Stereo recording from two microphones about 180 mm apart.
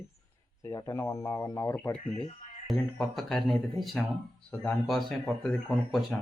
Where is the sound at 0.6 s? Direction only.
20° left (ahead or behind).